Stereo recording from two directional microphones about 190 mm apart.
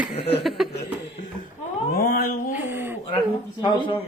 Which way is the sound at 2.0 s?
50° left (ahead or behind).